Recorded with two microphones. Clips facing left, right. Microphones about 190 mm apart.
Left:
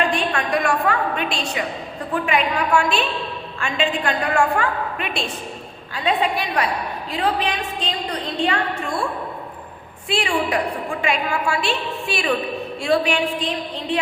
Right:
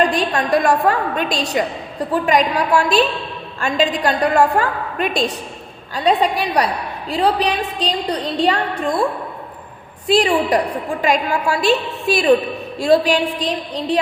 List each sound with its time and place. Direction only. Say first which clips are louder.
0.0 s a woman's voice: right 4 dB; 35° right (ahead or behind)
10.1 s a woman's voice: right 7 dB; 40° right (ahead or behind)